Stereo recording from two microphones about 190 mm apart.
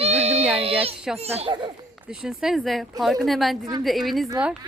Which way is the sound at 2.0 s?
5° right (ahead or behind).